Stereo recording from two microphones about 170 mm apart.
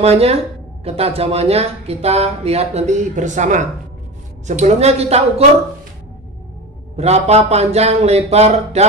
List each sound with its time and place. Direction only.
0.0 s speech: 35° right (ahead or behind)
7.0 s speech: 40° right (ahead or behind)